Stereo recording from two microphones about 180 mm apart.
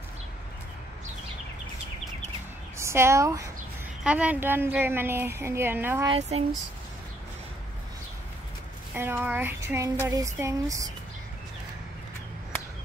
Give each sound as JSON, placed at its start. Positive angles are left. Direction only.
{"t": 2.8, "sound": "speech", "side_deg": -15}
{"t": 4.0, "sound": "a woman's voice", "side_deg": -5}
{"t": 6.0, "sound": "speech", "side_deg": -35}
{"t": 8.9, "sound": "a woman's voice", "side_deg": -10}